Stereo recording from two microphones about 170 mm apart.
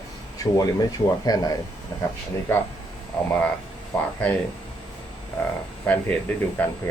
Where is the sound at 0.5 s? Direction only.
20° left (ahead or behind).